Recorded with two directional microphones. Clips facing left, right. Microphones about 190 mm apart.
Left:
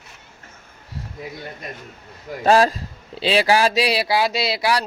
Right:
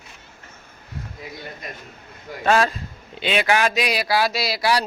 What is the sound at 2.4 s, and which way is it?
A man's voice, 35° left (ahead or behind).